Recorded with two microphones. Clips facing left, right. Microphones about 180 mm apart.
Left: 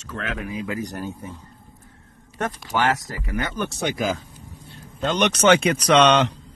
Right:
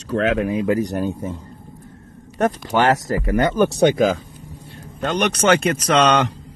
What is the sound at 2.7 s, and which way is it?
Speech, 40° right (ahead or behind).